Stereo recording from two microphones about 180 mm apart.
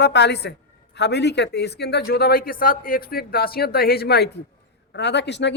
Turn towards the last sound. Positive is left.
turn(degrees=75)  # may be behind; listen again after turning